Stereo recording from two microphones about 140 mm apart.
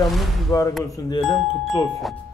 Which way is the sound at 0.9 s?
30° left (ahead or behind).